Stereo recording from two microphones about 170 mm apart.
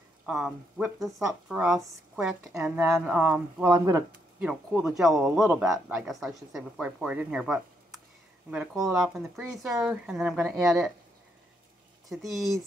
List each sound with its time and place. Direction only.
0.3 s a woman's voice: 5° right (ahead or behind)
3.6 s speech: 20° right (ahead or behind)
4.4 s a woman's voice: 5° right (ahead or behind)
8.9 s speech: 15° right (ahead or behind)
9.8 s a woman's voice: 5° right (ahead or behind)
12.1 s a woman's voice: centre (ahead or behind)